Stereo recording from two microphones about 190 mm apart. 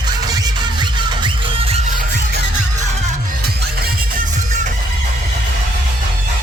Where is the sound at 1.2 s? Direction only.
30° right (ahead or behind).